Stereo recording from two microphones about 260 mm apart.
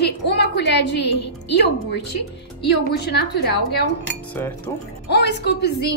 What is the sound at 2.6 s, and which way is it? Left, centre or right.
Speech, left.